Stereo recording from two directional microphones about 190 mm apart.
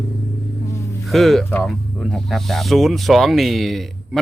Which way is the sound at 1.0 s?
Centre (ahead or behind).